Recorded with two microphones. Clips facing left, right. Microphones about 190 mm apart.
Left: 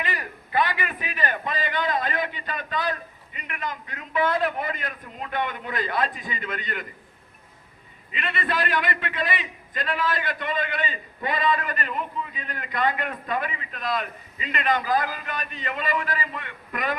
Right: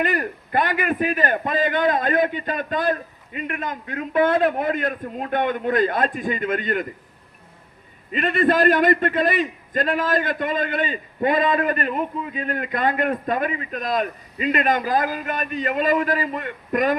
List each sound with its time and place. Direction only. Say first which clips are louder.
0.0 s a man's voice: right 9 dB; 50° right (ahead or behind)
8.1 s a man's voice: right 10 dB; 45° right (ahead or behind)